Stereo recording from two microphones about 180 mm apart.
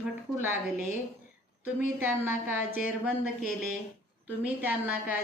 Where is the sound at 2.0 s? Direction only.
10° right (ahead or behind).